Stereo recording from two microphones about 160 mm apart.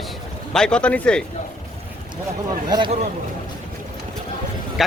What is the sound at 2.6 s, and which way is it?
Speech, 25° right (ahead or behind).